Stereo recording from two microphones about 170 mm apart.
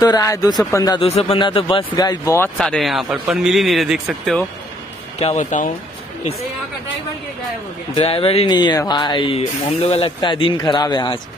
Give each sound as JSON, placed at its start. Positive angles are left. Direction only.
{"t": 0.0, "sound": "speech", "side_deg": 20}
{"t": 1.0, "sound": "speech", "side_deg": 35}
{"t": 2.5, "sound": "a man's voice", "side_deg": 0}
{"t": 5.2, "sound": "speech", "side_deg": 45}
{"t": 7.9, "sound": "speech", "side_deg": 35}